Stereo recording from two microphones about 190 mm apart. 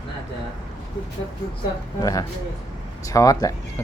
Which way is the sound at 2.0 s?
15° left (ahead or behind).